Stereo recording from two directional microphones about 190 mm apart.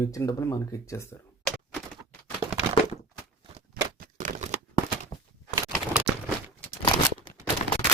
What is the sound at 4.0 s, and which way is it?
Typewriter, 45° right (ahead or behind).